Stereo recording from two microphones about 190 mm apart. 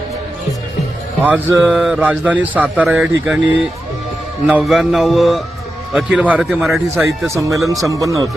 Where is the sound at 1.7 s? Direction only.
5° right (ahead or behind).